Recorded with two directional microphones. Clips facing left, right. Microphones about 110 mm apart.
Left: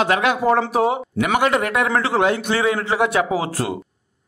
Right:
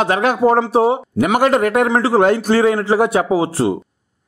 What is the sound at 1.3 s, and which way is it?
A man's voice, 40° right (ahead or behind).